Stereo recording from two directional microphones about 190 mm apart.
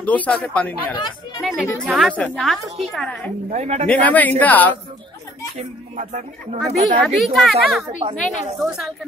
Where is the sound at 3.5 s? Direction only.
35° right (ahead or behind).